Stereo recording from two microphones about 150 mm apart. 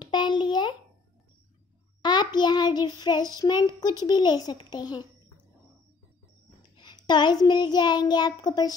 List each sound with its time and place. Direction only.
0.0 s a child's voice: 30° left (ahead or behind)
2.0 s child singing: 30° left (ahead or behind)
6.8 s child singing: 30° left (ahead or behind)